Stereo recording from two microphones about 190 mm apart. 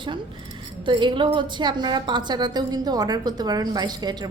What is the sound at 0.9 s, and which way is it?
A woman's voice, 25° right (ahead or behind).